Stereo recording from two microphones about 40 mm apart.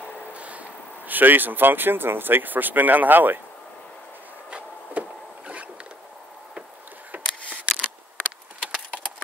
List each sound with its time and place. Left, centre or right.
0.3 s train: right
1.0 s speech: right
4.5 s a sound: right
7.1 s camera: right